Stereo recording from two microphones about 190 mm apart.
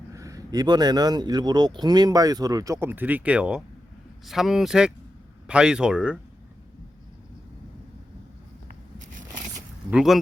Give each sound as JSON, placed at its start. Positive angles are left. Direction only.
{"t": 0.1, "sound": "speech", "side_deg": -15}
{"t": 9.9, "sound": "speech", "side_deg": 0}